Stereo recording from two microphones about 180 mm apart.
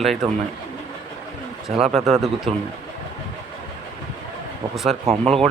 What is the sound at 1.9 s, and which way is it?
Speech, 35° right (ahead or behind).